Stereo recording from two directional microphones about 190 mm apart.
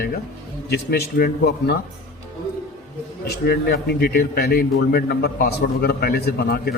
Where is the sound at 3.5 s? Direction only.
55° left (ahead or behind).